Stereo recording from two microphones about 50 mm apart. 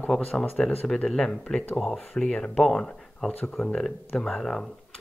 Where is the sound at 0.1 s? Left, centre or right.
Centre.